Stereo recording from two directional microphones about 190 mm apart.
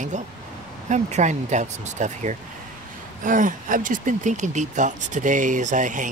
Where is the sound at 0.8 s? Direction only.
40° right (ahead or behind).